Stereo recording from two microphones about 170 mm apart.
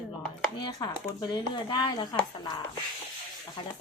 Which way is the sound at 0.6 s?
25° left (ahead or behind).